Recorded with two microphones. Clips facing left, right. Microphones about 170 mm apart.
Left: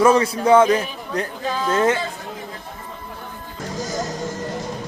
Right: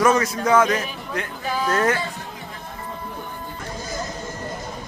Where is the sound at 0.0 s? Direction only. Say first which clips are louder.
Left 3 dB; 30° left (ahead or behind).